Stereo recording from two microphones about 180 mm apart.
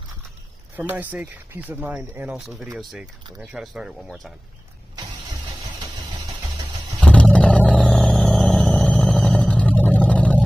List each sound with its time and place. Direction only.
0.7 s speech: 10° right (ahead or behind)
7.0 s vehicle: 5° left (ahead or behind)